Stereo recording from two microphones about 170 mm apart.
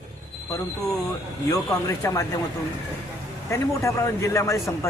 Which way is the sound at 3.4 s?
15° left (ahead or behind).